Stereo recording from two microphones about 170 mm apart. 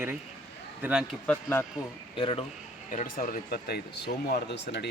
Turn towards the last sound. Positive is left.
turn(degrees=80)